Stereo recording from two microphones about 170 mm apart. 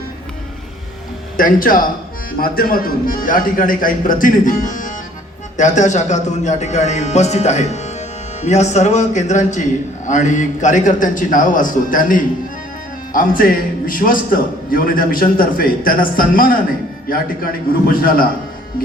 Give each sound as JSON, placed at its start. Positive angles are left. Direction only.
{"t": 1.4, "sound": "a man's voice", "side_deg": 55}